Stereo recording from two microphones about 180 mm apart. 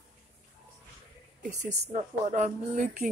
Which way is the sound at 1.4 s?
40° right (ahead or behind).